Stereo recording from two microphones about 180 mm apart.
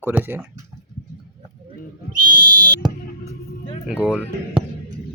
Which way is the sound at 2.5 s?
25° right (ahead or behind).